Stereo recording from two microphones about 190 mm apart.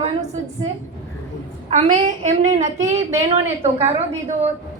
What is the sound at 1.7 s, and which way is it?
A woman's voice, 40° right (ahead or behind).